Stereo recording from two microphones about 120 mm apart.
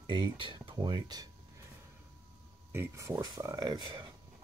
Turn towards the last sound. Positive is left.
turn(degrees=-35)  # may be behind; listen again after turning